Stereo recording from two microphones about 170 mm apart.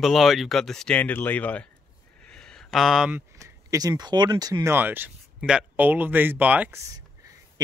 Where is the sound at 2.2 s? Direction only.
5° left (ahead or behind).